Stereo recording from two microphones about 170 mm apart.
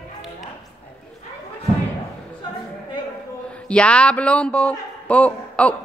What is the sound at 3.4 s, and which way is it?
A man's voice, 5° left (ahead or behind).